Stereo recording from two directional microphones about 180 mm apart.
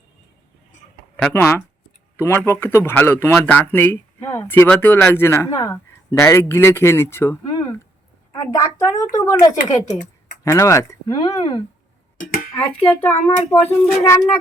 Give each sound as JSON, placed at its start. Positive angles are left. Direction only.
{"t": 1.1, "sound": "speech", "side_deg": 10}
{"t": 12.5, "sound": "speech", "side_deg": 10}
{"t": 13.1, "sound": "speech", "side_deg": 35}
{"t": 13.6, "sound": "speech", "side_deg": 15}